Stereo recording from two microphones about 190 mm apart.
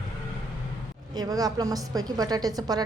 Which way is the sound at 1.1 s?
20° right (ahead or behind).